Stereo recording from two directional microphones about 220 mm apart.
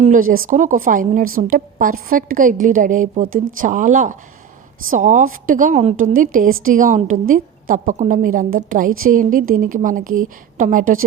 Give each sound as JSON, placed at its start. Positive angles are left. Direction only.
{"t": 0.0, "sound": "a woman's voice", "side_deg": -35}